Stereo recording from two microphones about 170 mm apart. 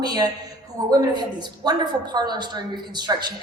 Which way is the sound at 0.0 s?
25° right (ahead or behind).